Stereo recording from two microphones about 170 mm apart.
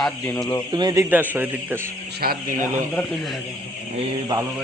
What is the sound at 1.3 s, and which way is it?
Speech, 10° right (ahead or behind).